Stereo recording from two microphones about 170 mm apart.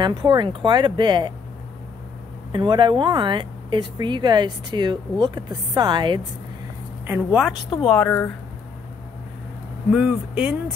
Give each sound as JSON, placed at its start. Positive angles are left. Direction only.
{"t": 0.0, "sound": "speech", "side_deg": -25}
{"t": 2.5, "sound": "speech", "side_deg": -25}
{"t": 7.1, "sound": "a woman's voice", "side_deg": -5}
{"t": 7.9, "sound": "speech", "side_deg": 5}
{"t": 9.9, "sound": "speech", "side_deg": -5}